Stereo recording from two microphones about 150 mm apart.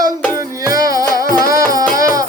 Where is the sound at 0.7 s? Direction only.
25° right (ahead or behind).